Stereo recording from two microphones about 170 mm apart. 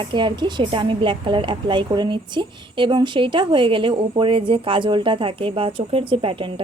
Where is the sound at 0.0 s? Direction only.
30° right (ahead or behind).